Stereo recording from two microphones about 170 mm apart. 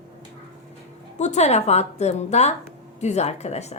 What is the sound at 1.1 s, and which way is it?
A woman's voice, 45° left (ahead or behind).